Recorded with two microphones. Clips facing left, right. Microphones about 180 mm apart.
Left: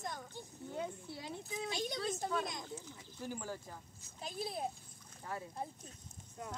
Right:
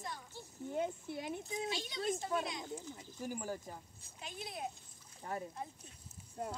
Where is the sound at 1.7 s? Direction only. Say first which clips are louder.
Left 1 dB; 45° left (ahead or behind).